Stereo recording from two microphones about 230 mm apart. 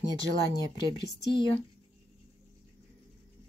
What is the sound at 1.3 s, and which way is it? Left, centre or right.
Speech, left.